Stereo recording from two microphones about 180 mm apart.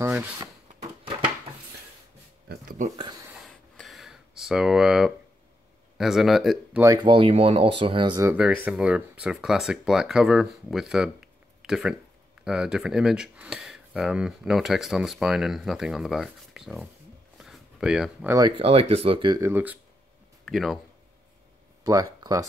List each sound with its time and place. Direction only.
0.0 s speech: 5° right (ahead or behind)
3.0 s speech: 25° right (ahead or behind)
3.4 s a sound: centre (ahead or behind)
5.9 s speech: centre (ahead or behind)
6.8 s speech: 20° right (ahead or behind)
8.6 s speech: 5° right (ahead or behind)
17.4 s a sound: centre (ahead or behind)
18.3 s speech: 25° right (ahead or behind)
19.4 s speech: 10° right (ahead or behind)
21.8 s speech: 20° right (ahead or behind)